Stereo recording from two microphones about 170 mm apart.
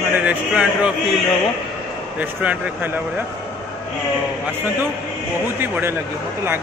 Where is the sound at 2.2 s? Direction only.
10° right (ahead or behind).